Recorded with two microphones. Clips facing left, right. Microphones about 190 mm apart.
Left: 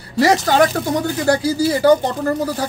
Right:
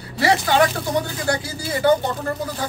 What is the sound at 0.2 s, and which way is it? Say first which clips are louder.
Speech: left 4 dB; 40° left (ahead or behind).